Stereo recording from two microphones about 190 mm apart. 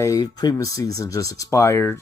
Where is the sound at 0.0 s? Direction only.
20° left (ahead or behind).